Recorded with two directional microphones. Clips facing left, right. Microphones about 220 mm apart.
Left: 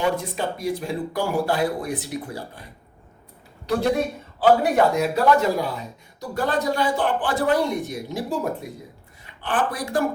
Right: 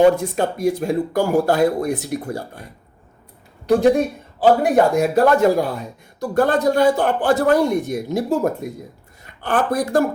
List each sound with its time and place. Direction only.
0.0 s speech: 45° right (ahead or behind)
3.7 s speech: 50° right (ahead or behind)